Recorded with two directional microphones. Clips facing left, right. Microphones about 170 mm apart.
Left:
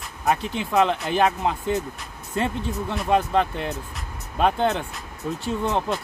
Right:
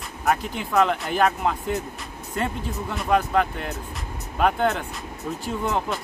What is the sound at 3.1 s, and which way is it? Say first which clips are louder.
Speech: even; 25° left (ahead or behind).